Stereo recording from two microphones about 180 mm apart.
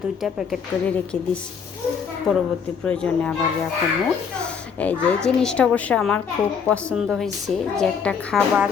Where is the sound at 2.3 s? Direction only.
Centre (ahead or behind).